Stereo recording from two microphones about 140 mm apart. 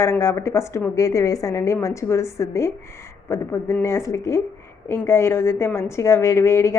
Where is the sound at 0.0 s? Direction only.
20° left (ahead or behind).